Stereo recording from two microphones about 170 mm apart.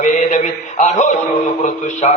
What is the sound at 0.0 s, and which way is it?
Mantra, 45° left (ahead or behind).